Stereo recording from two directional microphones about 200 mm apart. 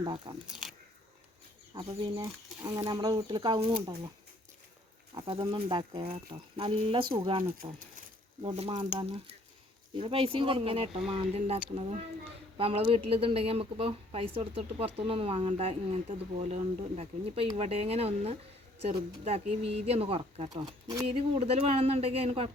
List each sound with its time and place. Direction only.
0.0 s speech: 25° right (ahead or behind)
0.5 s speech: centre (ahead or behind)
1.8 s speech: 25° right (ahead or behind)
2.2 s speech: 15° right (ahead or behind)
5.1 s speech: 25° right (ahead or behind)